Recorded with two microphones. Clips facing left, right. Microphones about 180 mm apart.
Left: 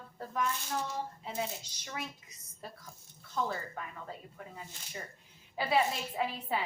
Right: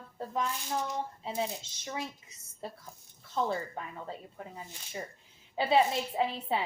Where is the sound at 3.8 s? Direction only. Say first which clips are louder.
Right 3 dB; 25° right (ahead or behind).